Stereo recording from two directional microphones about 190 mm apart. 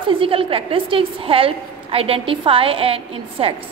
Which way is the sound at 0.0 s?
25° right (ahead or behind).